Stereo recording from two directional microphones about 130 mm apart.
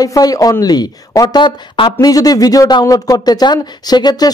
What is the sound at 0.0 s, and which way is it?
A woman's voice, 30° left (ahead or behind).